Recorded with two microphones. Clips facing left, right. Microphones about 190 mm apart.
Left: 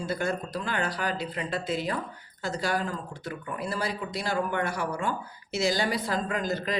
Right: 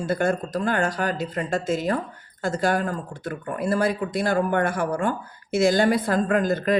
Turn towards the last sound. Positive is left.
turn(degrees=-55)  # may be behind; listen again after turning